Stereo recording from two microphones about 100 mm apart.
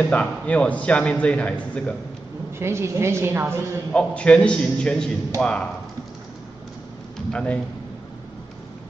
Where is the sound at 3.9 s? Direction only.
10° left (ahead or behind).